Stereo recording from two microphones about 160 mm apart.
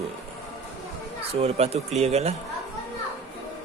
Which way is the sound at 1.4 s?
40° right (ahead or behind).